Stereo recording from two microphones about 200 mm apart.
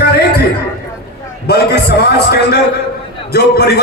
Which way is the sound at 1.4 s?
55° left (ahead or behind).